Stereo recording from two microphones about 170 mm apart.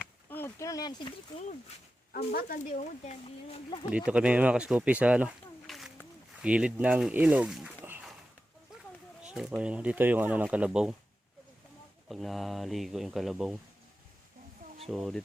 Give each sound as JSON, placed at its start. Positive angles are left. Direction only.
{"t": 0.3, "sound": "a sound", "side_deg": 15}
{"t": 2.1, "sound": "speech", "side_deg": 60}
{"t": 3.1, "sound": "speech", "side_deg": 35}
{"t": 3.9, "sound": "speech", "side_deg": -5}
{"t": 9.2, "sound": "speech", "side_deg": -5}
{"t": 12.0, "sound": "speech", "side_deg": 0}
{"t": 14.8, "sound": "speech", "side_deg": 0}